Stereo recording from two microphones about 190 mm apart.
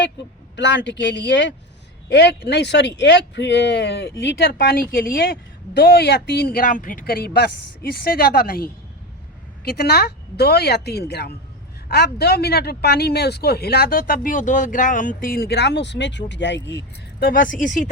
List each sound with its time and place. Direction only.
0.2 s a woman's voice: 70° left (ahead or behind); by 17.8 s 45° left (ahead or behind)